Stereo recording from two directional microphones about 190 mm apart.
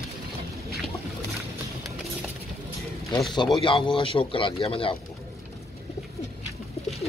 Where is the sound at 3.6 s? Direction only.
25° left (ahead or behind).